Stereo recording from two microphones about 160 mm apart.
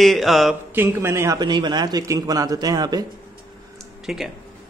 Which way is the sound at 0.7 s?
15° right (ahead or behind).